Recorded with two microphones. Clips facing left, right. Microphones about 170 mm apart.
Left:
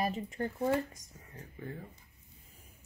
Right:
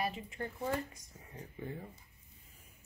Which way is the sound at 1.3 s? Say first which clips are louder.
Even; 20° right (ahead or behind).